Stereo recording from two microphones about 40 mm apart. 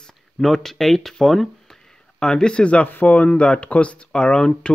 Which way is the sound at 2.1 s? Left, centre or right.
Left.